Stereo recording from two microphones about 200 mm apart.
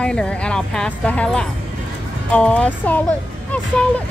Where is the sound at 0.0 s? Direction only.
5° left (ahead or behind).